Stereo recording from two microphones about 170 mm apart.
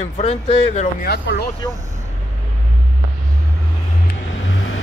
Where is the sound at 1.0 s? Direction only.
70° left (ahead or behind).